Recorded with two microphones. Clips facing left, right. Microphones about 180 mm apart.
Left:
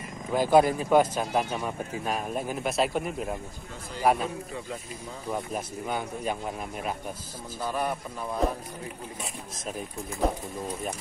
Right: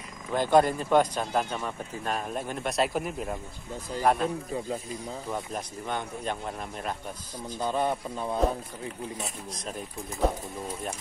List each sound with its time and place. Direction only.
0.3 s speech: 5° left (ahead or behind)
5.3 s speech: 5° left (ahead or behind)
7.6 s speech: 25° right (ahead or behind)